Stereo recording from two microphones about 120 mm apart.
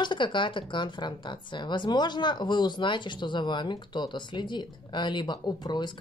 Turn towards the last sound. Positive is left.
turn(degrees=40)  # may be behind; listen again after turning